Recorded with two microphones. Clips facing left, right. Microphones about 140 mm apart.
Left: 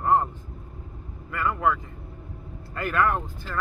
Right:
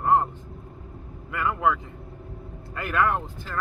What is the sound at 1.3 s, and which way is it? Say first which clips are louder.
Speech: even; 5° right (ahead or behind).